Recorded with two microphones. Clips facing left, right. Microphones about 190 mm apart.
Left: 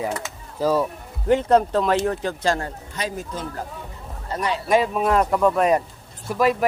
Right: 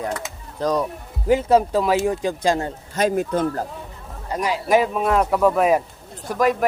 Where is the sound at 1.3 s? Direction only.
5° right (ahead or behind).